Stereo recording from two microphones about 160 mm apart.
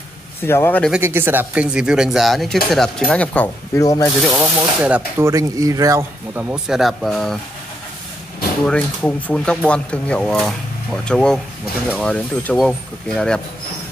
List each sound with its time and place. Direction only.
0.5 s speech: 15° left (ahead or behind)
1.0 s speech: 15° right (ahead or behind); by 3.4 s 10° left (ahead or behind)
3.7 s speech: 20° left (ahead or behind)
4.2 s speech: centre (ahead or behind)
5.3 s speech: 20° right (ahead or behind)
6.5 s speech: centre (ahead or behind)
8.6 s speech: 5° left (ahead or behind)